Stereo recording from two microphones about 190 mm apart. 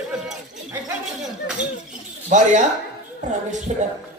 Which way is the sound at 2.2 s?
40° right (ahead or behind).